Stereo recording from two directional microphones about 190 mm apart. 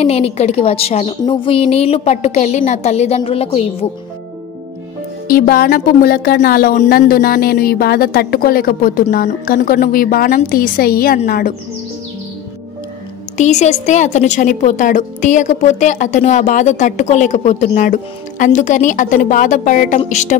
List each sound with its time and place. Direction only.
0.0 s speech: 35° left (ahead or behind)
5.3 s speech: 50° left (ahead or behind)
13.4 s speech: 35° left (ahead or behind)